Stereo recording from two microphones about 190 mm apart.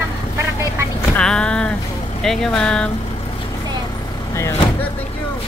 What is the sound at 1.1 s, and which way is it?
Speech, 5° left (ahead or behind).